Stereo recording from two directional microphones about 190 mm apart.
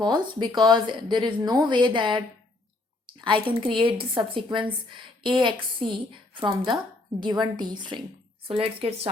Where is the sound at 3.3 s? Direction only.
25° right (ahead or behind).